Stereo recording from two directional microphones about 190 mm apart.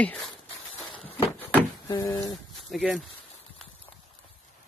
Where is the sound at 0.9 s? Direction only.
30° left (ahead or behind).